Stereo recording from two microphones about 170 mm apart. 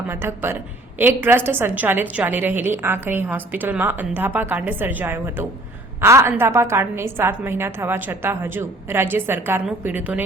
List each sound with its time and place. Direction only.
0.1 s a woman's voice: 15° right (ahead or behind)